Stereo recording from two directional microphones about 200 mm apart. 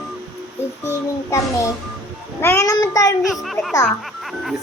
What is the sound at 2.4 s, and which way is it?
Speech, 15° left (ahead or behind).